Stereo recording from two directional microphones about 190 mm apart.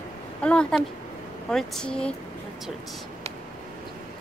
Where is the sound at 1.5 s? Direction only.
5° left (ahead or behind).